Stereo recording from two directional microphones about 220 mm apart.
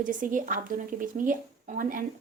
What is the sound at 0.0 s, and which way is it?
A woman's voice, 35° right (ahead or behind).